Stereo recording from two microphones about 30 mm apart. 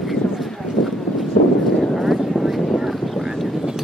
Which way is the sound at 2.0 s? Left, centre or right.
Centre.